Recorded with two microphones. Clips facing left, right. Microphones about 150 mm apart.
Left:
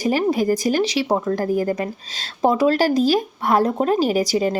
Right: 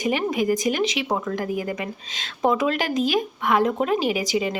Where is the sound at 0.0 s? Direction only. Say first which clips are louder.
Left 4 dB; 35° left (ahead or behind).